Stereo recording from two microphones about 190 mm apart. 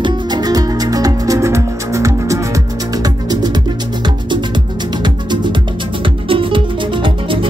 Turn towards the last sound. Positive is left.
turn(degrees=-25)  # may be behind; listen again after turning